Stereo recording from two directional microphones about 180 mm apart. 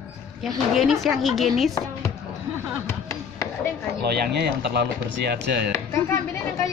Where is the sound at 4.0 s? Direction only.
65° right (ahead or behind).